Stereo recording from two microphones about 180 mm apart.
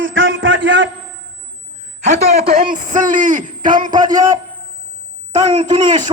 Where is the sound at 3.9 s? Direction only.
20° right (ahead or behind).